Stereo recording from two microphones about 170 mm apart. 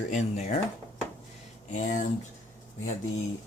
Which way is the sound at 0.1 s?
40° left (ahead or behind).